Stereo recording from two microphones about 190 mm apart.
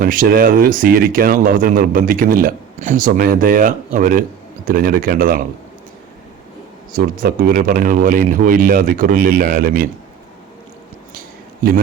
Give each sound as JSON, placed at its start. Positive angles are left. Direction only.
{"t": 0.0, "sound": "speech", "side_deg": -50}
{"t": 6.9, "sound": "speech", "side_deg": -45}